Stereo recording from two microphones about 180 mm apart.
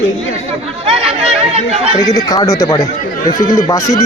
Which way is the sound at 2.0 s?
20° left (ahead or behind).